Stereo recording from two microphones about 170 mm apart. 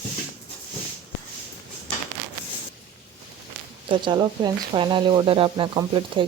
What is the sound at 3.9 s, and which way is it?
Speech, 25° right (ahead or behind).